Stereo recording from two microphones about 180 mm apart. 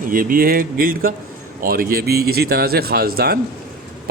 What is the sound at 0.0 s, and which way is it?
A man's voice, 50° right (ahead or behind).